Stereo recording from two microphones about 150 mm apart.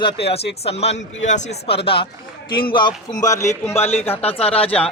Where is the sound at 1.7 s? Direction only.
40° left (ahead or behind).